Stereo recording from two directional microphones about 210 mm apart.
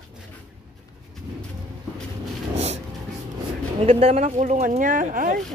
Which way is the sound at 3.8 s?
30° right (ahead or behind).